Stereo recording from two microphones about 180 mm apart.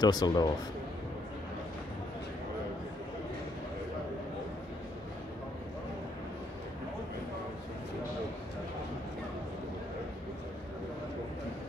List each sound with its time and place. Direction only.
0.0 s speech: 25° left (ahead or behind)